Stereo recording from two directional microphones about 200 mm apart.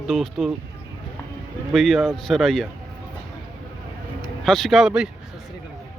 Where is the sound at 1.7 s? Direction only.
Centre (ahead or behind).